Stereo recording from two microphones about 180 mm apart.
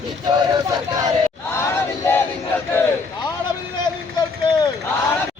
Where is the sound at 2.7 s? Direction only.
20° left (ahead or behind).